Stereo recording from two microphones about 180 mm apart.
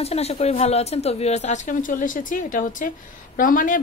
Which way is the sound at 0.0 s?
35° left (ahead or behind).